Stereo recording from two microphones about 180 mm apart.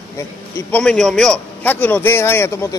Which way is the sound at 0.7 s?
5° left (ahead or behind).